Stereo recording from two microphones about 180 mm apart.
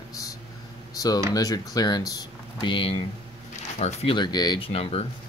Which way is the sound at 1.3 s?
20° left (ahead or behind).